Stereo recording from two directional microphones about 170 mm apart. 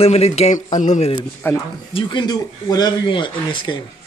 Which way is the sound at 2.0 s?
30° left (ahead or behind).